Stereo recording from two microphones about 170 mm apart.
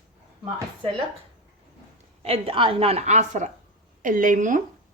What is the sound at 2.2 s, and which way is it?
A woman's voice, 35° right (ahead or behind).